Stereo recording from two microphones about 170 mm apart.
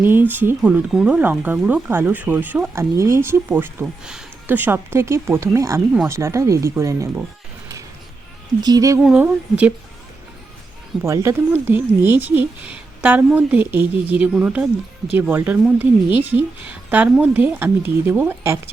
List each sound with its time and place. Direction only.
0.0 s speech: 10° right (ahead or behind)
8.6 s speech: 20° right (ahead or behind)
9.0 s speech: 5° right (ahead or behind)
11.0 s speech: 15° right (ahead or behind)